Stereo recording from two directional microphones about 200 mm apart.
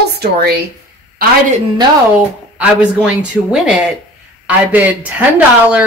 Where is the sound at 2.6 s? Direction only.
5° right (ahead or behind).